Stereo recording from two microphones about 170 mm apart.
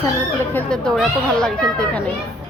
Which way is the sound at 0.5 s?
5° left (ahead or behind).